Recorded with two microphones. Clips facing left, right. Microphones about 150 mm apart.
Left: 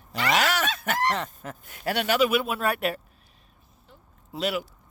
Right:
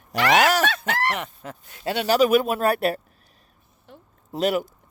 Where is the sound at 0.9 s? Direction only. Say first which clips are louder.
Even; 65° right (ahead or behind).